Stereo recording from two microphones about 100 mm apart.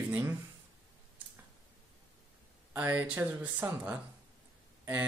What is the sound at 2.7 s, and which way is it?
Speech, 20° right (ahead or behind).